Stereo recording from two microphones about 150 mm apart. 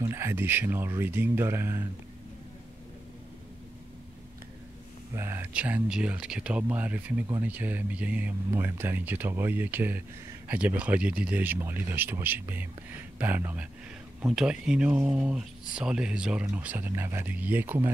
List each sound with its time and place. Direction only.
0.0 s speech: 15° right (ahead or behind)
5.1 s speech: 15° right (ahead or behind)